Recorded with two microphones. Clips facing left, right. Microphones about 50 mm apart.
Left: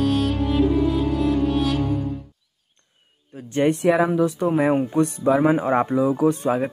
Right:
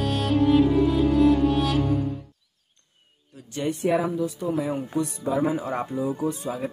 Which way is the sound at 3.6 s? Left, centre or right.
Left.